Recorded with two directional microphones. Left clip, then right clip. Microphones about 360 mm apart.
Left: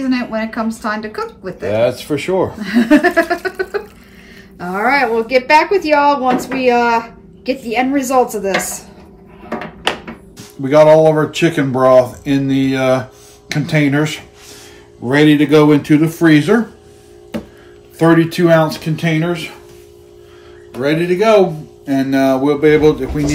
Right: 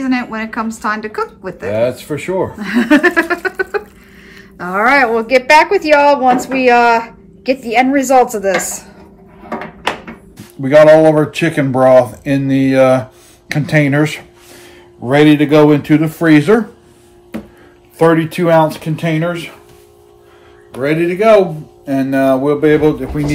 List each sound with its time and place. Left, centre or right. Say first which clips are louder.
0.0 s speech: even; centre
9.4 s a sound: even; centre
10.6 s speech: right 2 dB; centre
17.9 s speech: right 1 dB; centre
20.7 s speech: right 1 dB; centre